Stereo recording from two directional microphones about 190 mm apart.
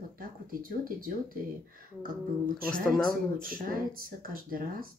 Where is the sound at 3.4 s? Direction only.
50° right (ahead or behind).